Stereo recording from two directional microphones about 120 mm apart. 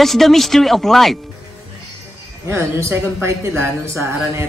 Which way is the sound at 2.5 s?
20° right (ahead or behind).